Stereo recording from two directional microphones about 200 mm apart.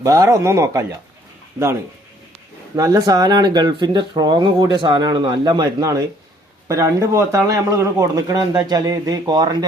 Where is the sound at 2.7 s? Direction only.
15° right (ahead or behind).